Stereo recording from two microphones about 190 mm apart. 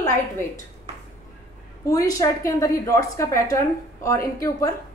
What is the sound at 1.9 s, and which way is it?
A woman's voice, 20° left (ahead or behind).